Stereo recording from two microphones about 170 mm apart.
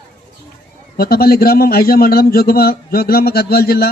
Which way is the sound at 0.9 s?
60° left (ahead or behind).